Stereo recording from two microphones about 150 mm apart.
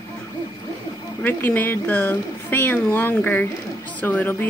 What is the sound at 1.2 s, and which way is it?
A woman's voice, 10° left (ahead or behind).